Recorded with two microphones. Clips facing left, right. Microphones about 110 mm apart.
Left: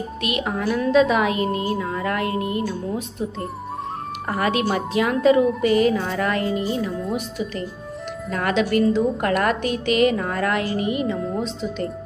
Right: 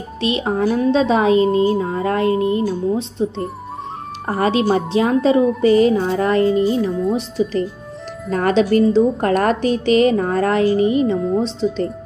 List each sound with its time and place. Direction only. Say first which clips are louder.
0.2 s a woman's voice: right 7 dB; 30° right (ahead or behind)
11.1 s speech: right 7 dB; centre (ahead or behind)
11.4 s a woman's voice: right 6 dB; 30° right (ahead or behind)